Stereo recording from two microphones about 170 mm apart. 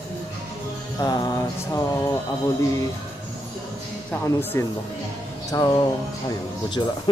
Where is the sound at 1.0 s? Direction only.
25° left (ahead or behind).